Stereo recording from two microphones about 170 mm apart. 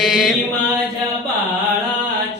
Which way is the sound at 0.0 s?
5° right (ahead or behind).